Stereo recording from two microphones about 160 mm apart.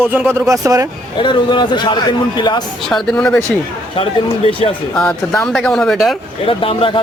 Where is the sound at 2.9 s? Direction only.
Centre (ahead or behind).